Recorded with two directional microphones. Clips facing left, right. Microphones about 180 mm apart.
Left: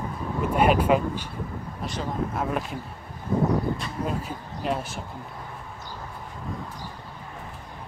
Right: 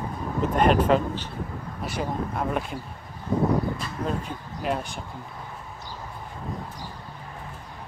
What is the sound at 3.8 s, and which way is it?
Speech, centre (ahead or behind).